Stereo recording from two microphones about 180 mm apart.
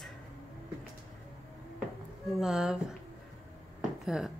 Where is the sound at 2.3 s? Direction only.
5° right (ahead or behind).